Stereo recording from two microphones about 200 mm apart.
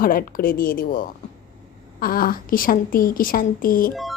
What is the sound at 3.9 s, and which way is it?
Speech, centre (ahead or behind).